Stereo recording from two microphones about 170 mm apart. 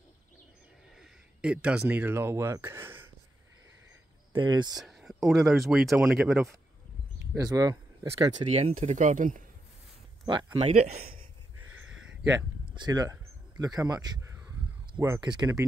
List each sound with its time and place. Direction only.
0.9 s speech: 5° right (ahead or behind)
4.3 s speech: 25° right (ahead or behind)
4.7 s speech: centre (ahead or behind)
7.3 s speech: 20° right (ahead or behind)
8.5 s speech: 40° right (ahead or behind)
10.2 s speech: 30° right (ahead or behind)
12.6 s speech: 25° right (ahead or behind)
15.3 s speech: 20° right (ahead or behind)